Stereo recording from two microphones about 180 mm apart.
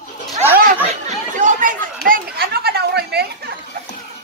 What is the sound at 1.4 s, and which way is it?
Chatter, 45° right (ahead or behind).